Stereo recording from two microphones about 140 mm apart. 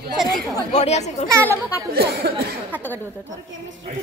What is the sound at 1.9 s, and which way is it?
Speech, 90° right.